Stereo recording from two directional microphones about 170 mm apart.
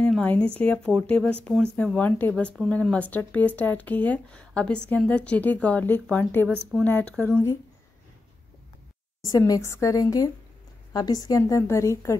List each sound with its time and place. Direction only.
0.0 s a sound: 10° left (ahead or behind)
0.6 s speech: 5° left (ahead or behind)
9.3 s a woman's voice: 20° left (ahead or behind)